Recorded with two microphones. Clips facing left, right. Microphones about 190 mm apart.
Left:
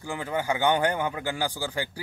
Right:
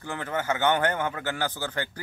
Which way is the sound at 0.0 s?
10° left (ahead or behind).